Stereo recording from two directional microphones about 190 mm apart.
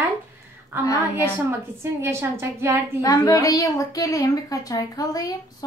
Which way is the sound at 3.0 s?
15° left (ahead or behind).